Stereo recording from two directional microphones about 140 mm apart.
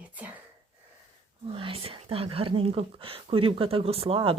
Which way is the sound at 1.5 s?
45° right (ahead or behind).